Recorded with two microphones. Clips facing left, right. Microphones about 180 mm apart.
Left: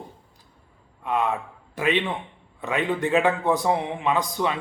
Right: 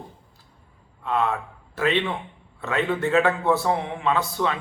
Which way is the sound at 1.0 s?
15° left (ahead or behind).